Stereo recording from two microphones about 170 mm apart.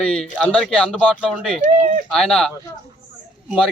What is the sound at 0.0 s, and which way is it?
Speech, 5° left (ahead or behind).